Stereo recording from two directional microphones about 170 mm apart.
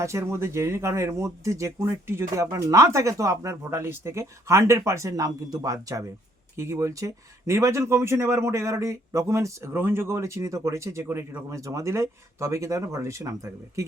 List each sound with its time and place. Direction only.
0.0 s speech: 15° right (ahead or behind)